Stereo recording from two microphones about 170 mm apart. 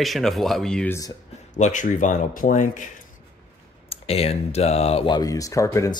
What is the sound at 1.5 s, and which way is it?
Speech, 45° left (ahead or behind).